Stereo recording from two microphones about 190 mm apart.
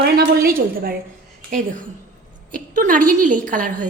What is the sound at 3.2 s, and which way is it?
Speech, 40° right (ahead or behind).